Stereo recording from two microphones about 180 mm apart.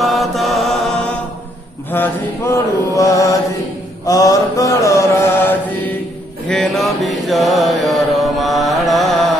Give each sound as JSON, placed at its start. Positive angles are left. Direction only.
{"t": 0.0, "sound": "mantra", "side_deg": 0}
{"t": 1.9, "sound": "mantra", "side_deg": 15}
{"t": 6.5, "sound": "mantra", "side_deg": 0}